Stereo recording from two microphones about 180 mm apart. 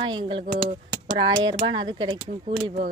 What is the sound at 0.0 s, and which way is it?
Speech, 30° right (ahead or behind).